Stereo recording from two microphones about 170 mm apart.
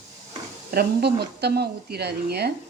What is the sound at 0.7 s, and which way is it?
Speech, 65° right (ahead or behind).